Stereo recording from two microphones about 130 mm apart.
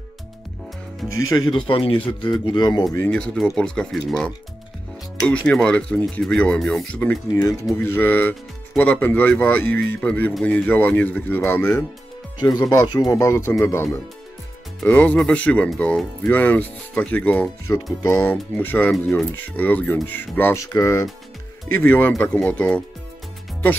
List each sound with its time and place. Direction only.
1.0 s speech: 25° left (ahead or behind)
1.7 s speech: 45° left (ahead or behind)
3.0 s speech: 10° left (ahead or behind)
12.4 s speech: 35° left (ahead or behind); by 20.6 s 15° left (ahead or behind)
20.6 s speech: 25° left (ahead or behind); by 22.8 s 10° left (ahead or behind)